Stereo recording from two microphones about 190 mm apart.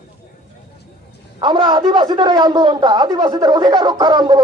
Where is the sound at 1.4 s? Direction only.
25° right (ahead or behind).